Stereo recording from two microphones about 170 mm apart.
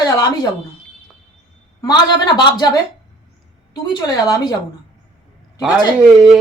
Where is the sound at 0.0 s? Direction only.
20° left (ahead or behind).